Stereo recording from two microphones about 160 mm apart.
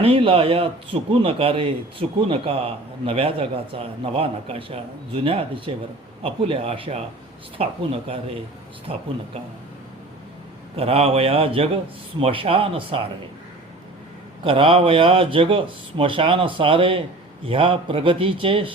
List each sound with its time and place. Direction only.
0.0 s speech: 35° right (ahead or behind)
10.8 s speech: 35° right (ahead or behind)
14.4 s speech: 35° right (ahead or behind)